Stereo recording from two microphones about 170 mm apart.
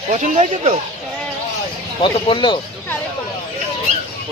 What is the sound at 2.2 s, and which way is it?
Speech, 30° left (ahead or behind).